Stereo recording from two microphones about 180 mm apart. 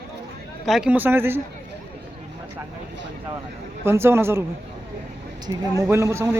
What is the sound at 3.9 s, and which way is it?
Speech, 15° right (ahead or behind).